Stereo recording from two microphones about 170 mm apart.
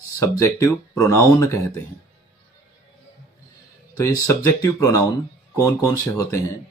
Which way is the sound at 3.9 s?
15° left (ahead or behind).